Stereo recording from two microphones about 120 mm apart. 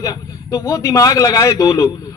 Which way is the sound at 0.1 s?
30° left (ahead or behind).